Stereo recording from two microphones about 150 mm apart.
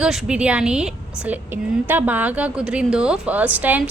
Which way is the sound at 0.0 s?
5° right (ahead or behind).